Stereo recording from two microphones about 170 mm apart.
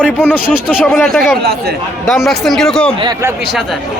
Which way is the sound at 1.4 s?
70° right (ahead or behind).